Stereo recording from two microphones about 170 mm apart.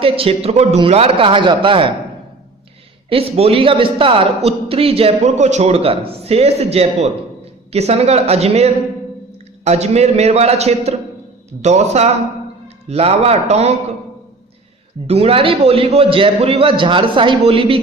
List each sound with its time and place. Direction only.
0.0 s a man's voice: 35° right (ahead or behind)
3.1 s a man's voice: 35° right (ahead or behind)
15.0 s a man's voice: 35° right (ahead or behind)